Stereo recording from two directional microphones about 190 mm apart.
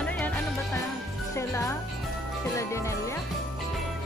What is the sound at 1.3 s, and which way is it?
Music, 15° left (ahead or behind).